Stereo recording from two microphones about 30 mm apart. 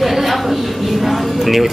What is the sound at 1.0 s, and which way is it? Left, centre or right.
Music, centre.